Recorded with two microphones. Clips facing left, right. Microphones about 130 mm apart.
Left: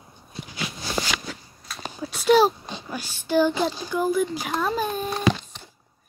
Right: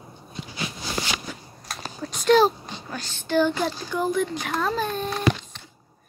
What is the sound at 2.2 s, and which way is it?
Speech, 10° left (ahead or behind).